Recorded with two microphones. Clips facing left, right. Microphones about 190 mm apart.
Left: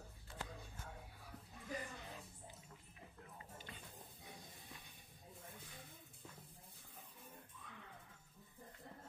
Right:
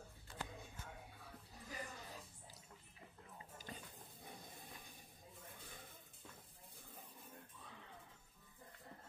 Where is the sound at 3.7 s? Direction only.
40° right (ahead or behind).